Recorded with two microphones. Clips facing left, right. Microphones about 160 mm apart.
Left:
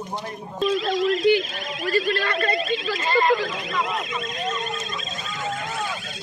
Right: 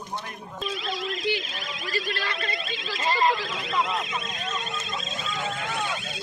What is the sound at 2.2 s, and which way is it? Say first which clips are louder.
Speech: left 8 dB; 50° left (ahead or behind).